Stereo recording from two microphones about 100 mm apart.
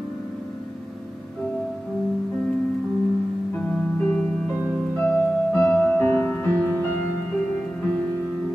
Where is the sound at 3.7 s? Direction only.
15° left (ahead or behind).